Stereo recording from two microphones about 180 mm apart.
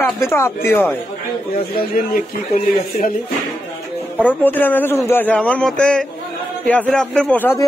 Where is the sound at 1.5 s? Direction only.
55° left (ahead or behind).